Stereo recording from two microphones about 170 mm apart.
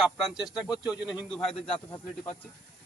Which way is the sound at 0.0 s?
5° right (ahead or behind).